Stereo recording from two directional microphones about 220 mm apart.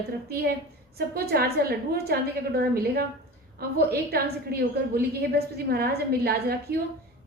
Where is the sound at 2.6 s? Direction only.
45° right (ahead or behind).